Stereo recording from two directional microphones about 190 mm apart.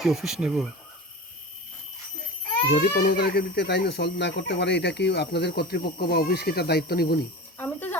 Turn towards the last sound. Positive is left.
turn(degrees=10)  # may be behind; listen again after turning